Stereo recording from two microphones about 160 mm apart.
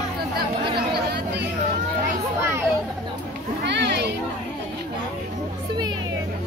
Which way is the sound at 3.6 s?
90° right.